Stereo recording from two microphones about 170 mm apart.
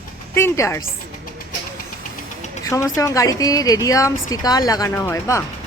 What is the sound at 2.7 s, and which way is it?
A woman's voice, 15° left (ahead or behind).